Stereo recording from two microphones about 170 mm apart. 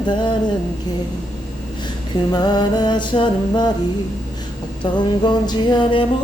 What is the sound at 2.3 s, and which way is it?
Music, 25° left (ahead or behind).